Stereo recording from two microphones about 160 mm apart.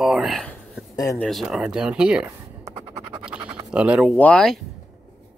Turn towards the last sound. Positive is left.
turn(degrees=5)  # may be behind; listen again after turning